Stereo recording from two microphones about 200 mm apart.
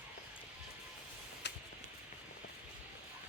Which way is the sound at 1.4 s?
60° left (ahead or behind).